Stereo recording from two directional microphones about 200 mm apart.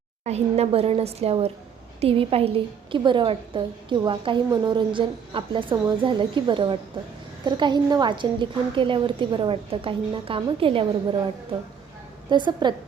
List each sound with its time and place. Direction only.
0.3 s a woman's voice: 30° right (ahead or behind)
12.3 s a woman's voice: 20° right (ahead or behind)